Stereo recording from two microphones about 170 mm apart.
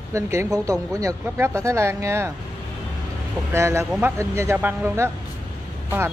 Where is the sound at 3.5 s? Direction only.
15° right (ahead or behind).